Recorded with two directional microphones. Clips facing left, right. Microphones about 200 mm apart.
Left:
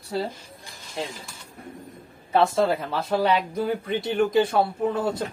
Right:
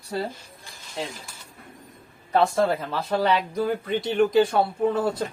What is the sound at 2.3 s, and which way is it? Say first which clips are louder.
Speech: even; 5° left (ahead or behind).